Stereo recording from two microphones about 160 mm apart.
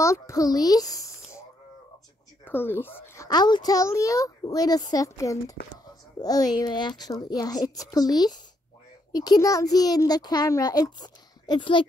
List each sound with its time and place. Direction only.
0.0 s a woman's voice: 20° left (ahead or behind)
2.4 s a sound: 15° left (ahead or behind)
3.3 s a child's voice: 25° left (ahead or behind)